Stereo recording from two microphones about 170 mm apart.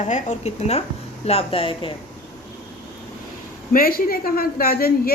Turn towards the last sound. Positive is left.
turn(degrees=60)  # may be behind; listen again after turning